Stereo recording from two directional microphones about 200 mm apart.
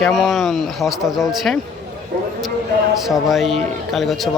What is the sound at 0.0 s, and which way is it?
Speech, centre (ahead or behind).